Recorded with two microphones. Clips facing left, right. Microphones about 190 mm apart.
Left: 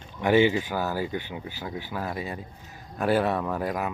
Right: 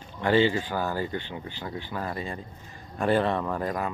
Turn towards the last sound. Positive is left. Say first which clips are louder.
# left 1 dB
turn(degrees=5)  # may be behind; listen again after turning